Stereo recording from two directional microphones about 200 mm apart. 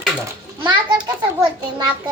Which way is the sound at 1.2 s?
20° right (ahead or behind).